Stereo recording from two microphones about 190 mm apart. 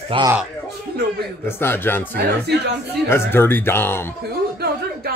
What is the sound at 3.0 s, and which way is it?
Speech, 10° left (ahead or behind).